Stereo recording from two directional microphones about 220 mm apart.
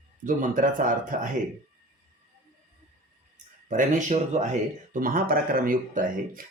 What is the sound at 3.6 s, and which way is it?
Speech, 35° right (ahead or behind).